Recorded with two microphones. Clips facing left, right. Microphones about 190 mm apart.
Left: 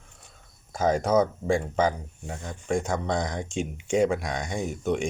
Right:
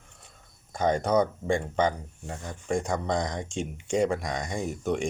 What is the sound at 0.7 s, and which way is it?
Speech, 5° left (ahead or behind).